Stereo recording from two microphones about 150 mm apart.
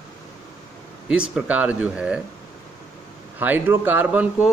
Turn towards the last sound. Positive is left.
turn(degrees=-10)  # may be behind; listen again after turning